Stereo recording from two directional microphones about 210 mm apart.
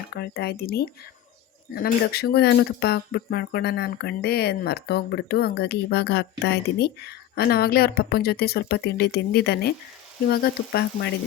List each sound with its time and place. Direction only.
0.1 s speech: 50° left (ahead or behind)